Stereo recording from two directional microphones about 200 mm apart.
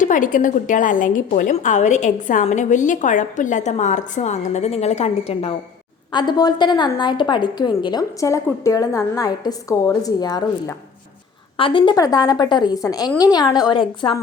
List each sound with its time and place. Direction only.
0.0 s a woman's voice: 40° left (ahead or behind); by 14.2 s 20° left (ahead or behind)